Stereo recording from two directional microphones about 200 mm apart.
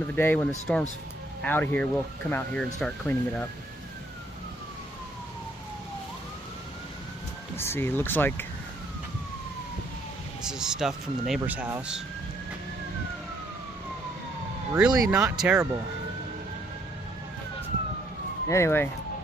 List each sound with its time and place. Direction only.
0.1 s speech: 10° left (ahead or behind)
7.5 s speech: 10° left (ahead or behind)
10.4 s speech: 5° right (ahead or behind)
14.9 s speech: 20° right (ahead or behind)
15.1 s speech: 5° right (ahead or behind)
18.5 s speech: 10° left (ahead or behind)